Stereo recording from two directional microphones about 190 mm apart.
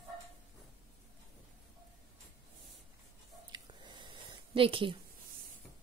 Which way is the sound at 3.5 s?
25° right (ahead or behind).